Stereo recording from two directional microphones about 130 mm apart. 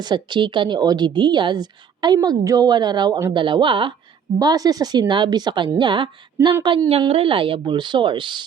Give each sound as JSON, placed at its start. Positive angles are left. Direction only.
{"t": 0.0, "sound": "speech", "side_deg": -35}